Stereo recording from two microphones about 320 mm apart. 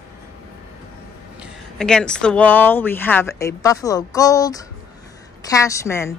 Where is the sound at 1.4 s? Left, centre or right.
Centre.